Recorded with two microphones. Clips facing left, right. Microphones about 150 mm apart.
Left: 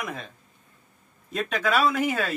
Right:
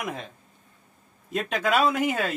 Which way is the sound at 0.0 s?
20° right (ahead or behind).